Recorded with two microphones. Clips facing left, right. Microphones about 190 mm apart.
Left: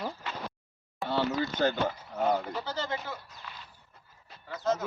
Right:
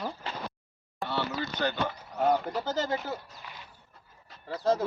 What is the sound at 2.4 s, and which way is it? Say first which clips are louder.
Speech: right 4 dB; 45° right (ahead or behind).